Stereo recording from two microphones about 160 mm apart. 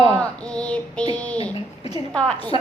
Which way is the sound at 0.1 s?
5° left (ahead or behind).